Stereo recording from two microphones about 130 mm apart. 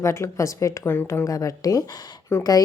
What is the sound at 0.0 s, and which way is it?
A woman's voice, 20° left (ahead or behind).